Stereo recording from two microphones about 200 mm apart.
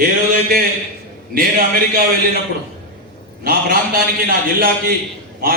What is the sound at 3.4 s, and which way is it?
A man's voice, 45° right (ahead or behind).